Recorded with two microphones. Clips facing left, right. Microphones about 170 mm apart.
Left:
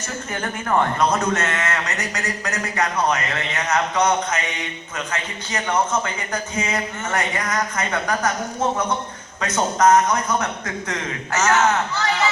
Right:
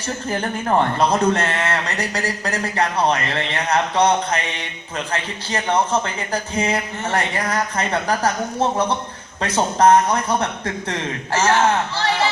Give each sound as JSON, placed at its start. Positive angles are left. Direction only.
{"t": 0.3, "sound": "speech", "side_deg": -30}
{"t": 9.4, "sound": "speech", "side_deg": -30}